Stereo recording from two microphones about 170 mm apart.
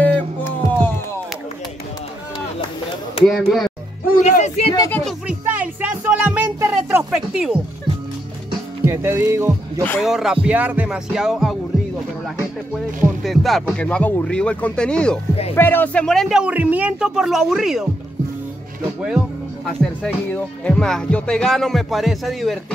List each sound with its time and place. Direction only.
0.0 s music: 10° left (ahead or behind)
3.3 s speech: centre (ahead or behind)
4.1 s music: 50° left (ahead or behind)
5.2 s music: 10° right (ahead or behind)
7.1 s speech: 5° right (ahead or behind)
8.8 s music: 15° right (ahead or behind)
10.0 s speech: centre (ahead or behind)
12.7 s speech: centre (ahead or behind)
18.9 s speech: 5° right (ahead or behind)